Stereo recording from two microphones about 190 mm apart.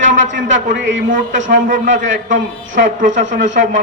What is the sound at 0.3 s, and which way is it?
Speech, 75° right (ahead or behind).